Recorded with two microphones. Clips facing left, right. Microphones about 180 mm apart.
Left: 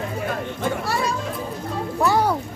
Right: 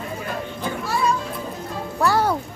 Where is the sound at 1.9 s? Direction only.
15° left (ahead or behind).